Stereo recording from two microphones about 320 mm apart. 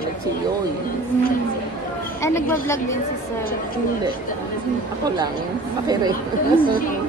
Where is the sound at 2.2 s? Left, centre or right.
Centre.